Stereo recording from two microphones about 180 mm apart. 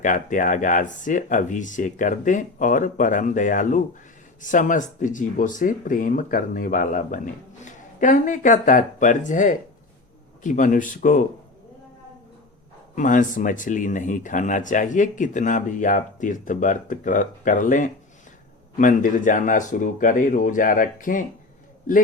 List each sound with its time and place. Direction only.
0.0 s speech: 45° left (ahead or behind)
13.0 s speech: 45° left (ahead or behind)